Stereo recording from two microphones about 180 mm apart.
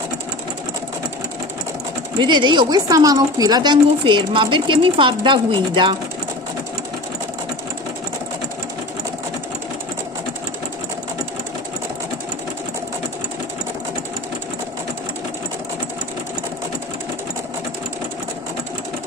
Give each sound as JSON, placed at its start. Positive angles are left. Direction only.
{"t": 2.1, "sound": "speech", "side_deg": -25}